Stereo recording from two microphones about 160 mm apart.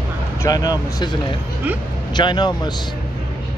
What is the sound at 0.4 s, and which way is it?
Speech, 25° left (ahead or behind).